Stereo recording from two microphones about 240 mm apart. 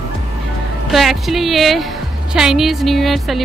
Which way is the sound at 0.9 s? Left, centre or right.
Centre.